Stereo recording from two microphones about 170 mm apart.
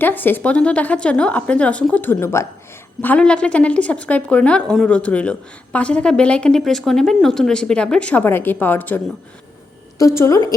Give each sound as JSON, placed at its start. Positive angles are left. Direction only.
{"t": 0.0, "sound": "a woman's voice", "side_deg": 10}
{"t": 10.0, "sound": "a woman's voice", "side_deg": 20}